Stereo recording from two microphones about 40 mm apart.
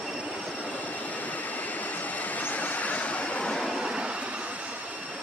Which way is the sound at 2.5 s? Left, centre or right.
Left.